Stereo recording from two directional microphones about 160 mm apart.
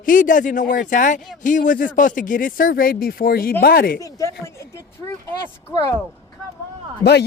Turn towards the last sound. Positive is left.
turn(degrees=90)